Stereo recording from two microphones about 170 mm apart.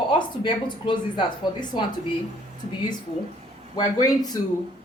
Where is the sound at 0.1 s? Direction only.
30° left (ahead or behind).